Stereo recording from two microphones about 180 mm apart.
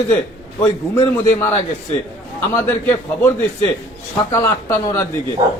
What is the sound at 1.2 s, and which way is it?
Speech, 15° left (ahead or behind).